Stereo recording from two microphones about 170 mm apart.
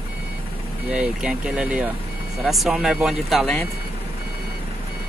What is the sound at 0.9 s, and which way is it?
Speech, 5° right (ahead or behind).